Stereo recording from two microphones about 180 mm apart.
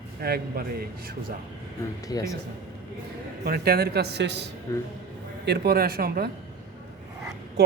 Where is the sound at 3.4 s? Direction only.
60° right (ahead or behind).